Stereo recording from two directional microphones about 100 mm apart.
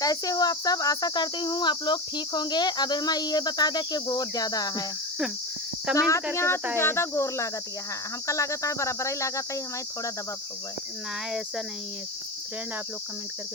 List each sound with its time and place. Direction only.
0.0 s cricket: 40° left (ahead or behind)
5.9 s speech: 5° right (ahead or behind)
6.3 s speech: 25° left (ahead or behind)
8.3 s a sound: 30° left (ahead or behind)
11.3 s speech: 5° right (ahead or behind)